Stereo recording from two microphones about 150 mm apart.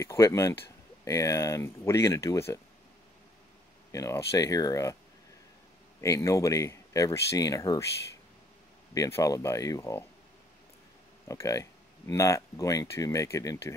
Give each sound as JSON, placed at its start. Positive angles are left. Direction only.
{"t": 0.0, "sound": "speech", "side_deg": 20}
{"t": 3.9, "sound": "speech", "side_deg": 20}
{"t": 5.9, "sound": "speech", "side_deg": 20}
{"t": 11.2, "sound": "speech", "side_deg": 20}